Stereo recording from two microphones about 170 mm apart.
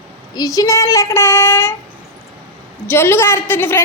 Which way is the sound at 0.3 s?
20° left (ahead or behind).